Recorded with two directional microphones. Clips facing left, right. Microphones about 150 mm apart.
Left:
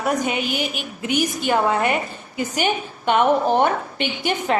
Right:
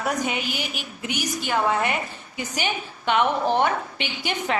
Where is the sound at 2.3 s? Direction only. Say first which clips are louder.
Left 6 dB; 50° left (ahead or behind).